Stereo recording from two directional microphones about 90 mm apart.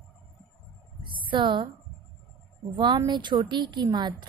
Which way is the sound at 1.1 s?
70° right (ahead or behind).